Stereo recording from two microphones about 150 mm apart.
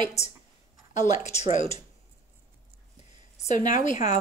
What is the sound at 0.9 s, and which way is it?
Speech, 50° left (ahead or behind).